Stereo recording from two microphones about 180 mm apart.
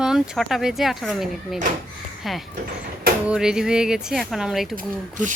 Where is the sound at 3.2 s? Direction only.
5° right (ahead or behind).